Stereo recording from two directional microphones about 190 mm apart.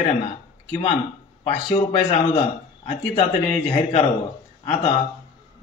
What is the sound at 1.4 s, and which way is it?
A man's voice, 30° left (ahead or behind).